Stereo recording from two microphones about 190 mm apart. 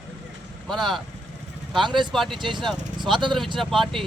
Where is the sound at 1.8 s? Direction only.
25° right (ahead or behind).